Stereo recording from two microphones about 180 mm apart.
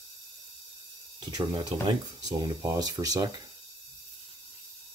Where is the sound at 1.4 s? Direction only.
30° right (ahead or behind).